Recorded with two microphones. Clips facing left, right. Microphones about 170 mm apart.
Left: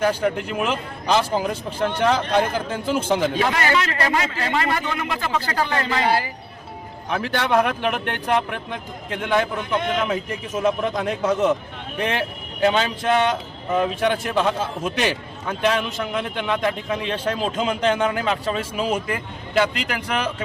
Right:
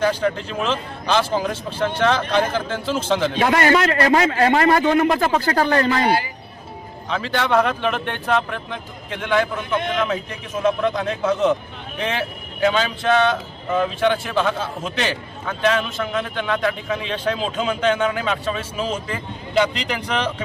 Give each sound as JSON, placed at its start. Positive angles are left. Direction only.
{"t": 0.0, "sound": "a man's voice", "side_deg": 10}
{"t": 3.4, "sound": "a man's voice", "side_deg": -40}
{"t": 7.1, "sound": "a man's voice", "side_deg": 15}